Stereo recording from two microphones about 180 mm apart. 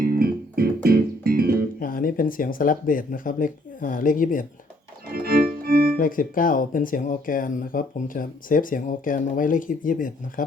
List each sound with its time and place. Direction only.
0.0 s music: 55° right (ahead or behind)
1.8 s speech: 50° left (ahead or behind)
5.1 s organ: 60° right (ahead or behind)
6.0 s speech: 50° left (ahead or behind)